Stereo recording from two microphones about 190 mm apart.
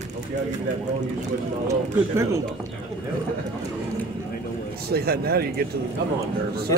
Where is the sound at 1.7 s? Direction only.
15° right (ahead or behind).